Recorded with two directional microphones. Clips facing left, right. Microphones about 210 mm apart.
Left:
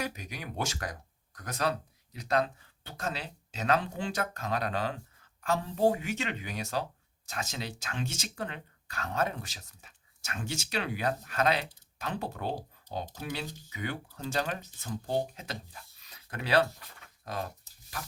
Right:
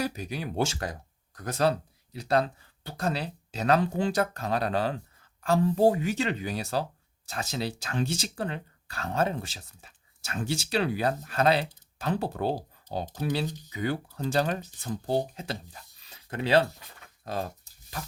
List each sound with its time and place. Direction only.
0.0 s speech: 35° right (ahead or behind)